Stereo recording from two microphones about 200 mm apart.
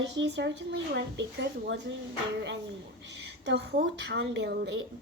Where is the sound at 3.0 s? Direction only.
60° right (ahead or behind).